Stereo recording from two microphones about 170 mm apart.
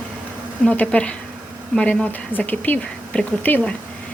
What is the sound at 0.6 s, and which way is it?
A woman's voice, 10° left (ahead or behind).